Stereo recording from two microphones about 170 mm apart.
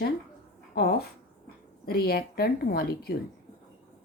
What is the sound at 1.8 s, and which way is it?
Speech, 65° left (ahead or behind).